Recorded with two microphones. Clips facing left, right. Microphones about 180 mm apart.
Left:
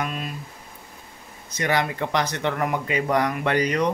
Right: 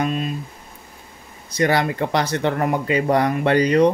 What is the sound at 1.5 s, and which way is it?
Speech, 35° right (ahead or behind).